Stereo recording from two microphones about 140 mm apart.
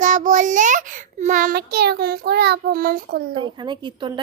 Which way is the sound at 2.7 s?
90° right.